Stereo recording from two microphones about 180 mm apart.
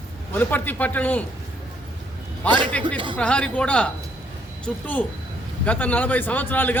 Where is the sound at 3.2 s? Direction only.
5° left (ahead or behind).